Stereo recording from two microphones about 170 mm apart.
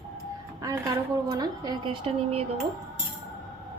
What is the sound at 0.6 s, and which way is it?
A woman's voice, 20° right (ahead or behind).